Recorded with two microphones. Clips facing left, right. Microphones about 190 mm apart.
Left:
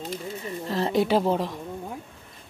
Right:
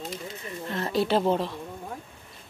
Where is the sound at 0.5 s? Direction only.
30° left (ahead or behind).